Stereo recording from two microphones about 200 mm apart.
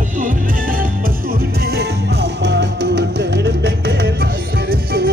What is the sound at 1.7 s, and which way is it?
Music, 60° right (ahead or behind).